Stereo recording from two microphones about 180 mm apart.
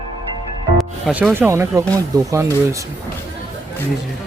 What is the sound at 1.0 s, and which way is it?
Speech, 5° right (ahead or behind).